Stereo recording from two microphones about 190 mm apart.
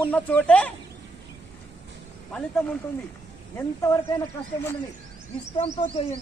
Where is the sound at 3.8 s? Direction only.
15° left (ahead or behind).